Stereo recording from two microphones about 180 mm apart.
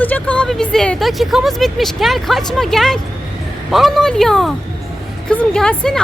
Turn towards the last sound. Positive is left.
turn(degrees=5)  # may be behind; listen again after turning